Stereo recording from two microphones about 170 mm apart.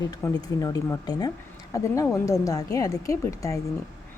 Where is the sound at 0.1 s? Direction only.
20° left (ahead or behind).